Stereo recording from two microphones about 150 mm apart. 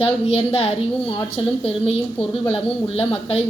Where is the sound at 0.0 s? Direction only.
40° left (ahead or behind).